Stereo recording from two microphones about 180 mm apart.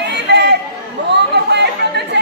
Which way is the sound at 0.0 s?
70° right (ahead or behind).